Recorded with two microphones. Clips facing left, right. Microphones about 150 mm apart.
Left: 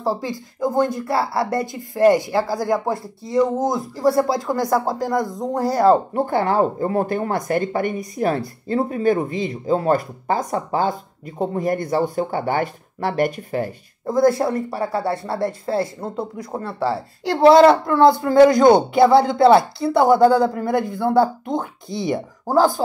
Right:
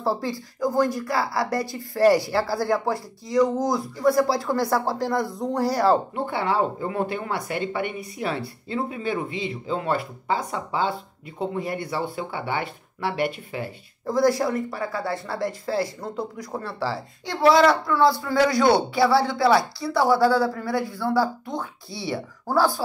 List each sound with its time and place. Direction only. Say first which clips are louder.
0.0 s speech: left 2 dB; 15° left (ahead or behind)
6.1 s speech: left 5 dB; 45° left (ahead or behind)
14.0 s speech: left 4 dB; 25° left (ahead or behind)
17.8 s speech: left 6 dB; 50° left (ahead or behind)
18.9 s speech: left 6 dB; 20° left (ahead or behind)
21.5 s speech: left 6 dB; 45° left (ahead or behind)
21.9 s speech: left 7 dB; 20° left (ahead or behind)